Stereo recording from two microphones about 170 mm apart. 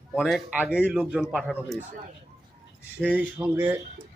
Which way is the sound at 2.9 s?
10° right (ahead or behind).